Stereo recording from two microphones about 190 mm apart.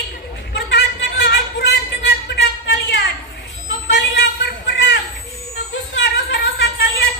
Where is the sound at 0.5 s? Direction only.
65° left (ahead or behind).